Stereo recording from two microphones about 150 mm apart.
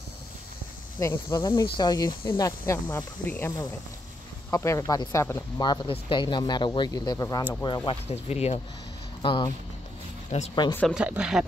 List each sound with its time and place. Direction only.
0.9 s speech: 20° left (ahead or behind)
5.6 s speech: 35° left (ahead or behind)
8.1 s speech: 45° left (ahead or behind)
9.2 s speech: 35° left (ahead or behind)
10.3 s speech: 50° left (ahead or behind)
10.7 s speech: 10° left (ahead or behind)
11.0 s speech: 5° right (ahead or behind)